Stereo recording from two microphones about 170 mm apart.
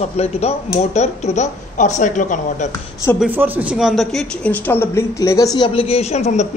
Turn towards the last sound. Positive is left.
turn(degrees=40)  # may be behind; listen again after turning